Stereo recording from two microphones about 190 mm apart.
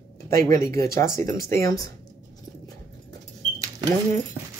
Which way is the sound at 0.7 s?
15° left (ahead or behind).